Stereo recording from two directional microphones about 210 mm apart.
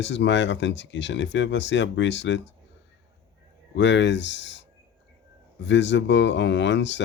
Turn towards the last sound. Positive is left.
turn(degrees=60)  # may be behind; listen again after turning